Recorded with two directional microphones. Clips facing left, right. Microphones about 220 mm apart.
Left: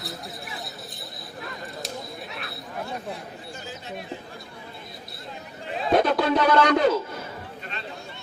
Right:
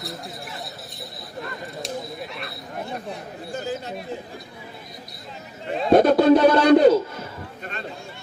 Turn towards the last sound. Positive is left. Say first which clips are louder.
# right 6 dB
turn(degrees=-35)  # may be behind; listen again after turning